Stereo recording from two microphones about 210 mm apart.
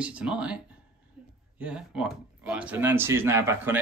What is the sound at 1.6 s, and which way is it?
Speech, 5° right (ahead or behind).